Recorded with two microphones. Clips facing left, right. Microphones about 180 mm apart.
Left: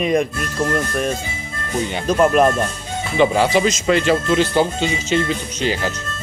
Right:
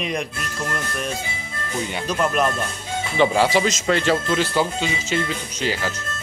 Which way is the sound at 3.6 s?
15° left (ahead or behind).